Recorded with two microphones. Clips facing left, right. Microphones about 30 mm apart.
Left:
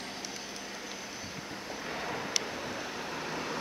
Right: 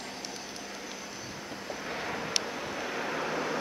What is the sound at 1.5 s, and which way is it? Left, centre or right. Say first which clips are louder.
Vehicle: right 2 dB; centre.